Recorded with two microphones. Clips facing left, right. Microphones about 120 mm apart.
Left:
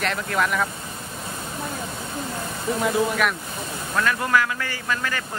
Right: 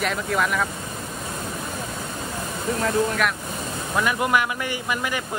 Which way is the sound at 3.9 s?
15° right (ahead or behind).